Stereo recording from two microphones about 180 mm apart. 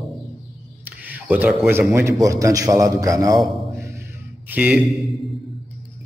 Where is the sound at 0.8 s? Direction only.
10° right (ahead or behind).